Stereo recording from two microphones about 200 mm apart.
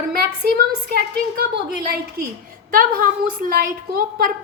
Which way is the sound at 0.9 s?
50° right (ahead or behind).